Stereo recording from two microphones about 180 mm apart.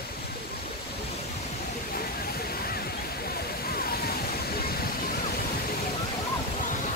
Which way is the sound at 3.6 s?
55° left (ahead or behind).